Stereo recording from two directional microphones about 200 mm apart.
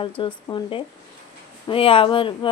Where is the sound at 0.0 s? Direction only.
25° left (ahead or behind).